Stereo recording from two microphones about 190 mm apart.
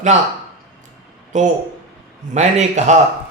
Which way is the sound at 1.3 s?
40° right (ahead or behind).